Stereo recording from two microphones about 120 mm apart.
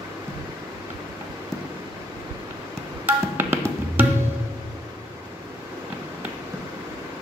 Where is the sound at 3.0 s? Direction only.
20° right (ahead or behind).